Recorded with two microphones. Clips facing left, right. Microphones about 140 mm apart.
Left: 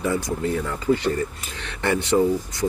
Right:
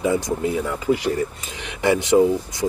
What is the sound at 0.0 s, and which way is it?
Speech, 15° right (ahead or behind).